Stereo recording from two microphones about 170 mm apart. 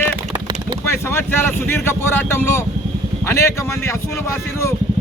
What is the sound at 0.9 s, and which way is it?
Speech, 15° left (ahead or behind).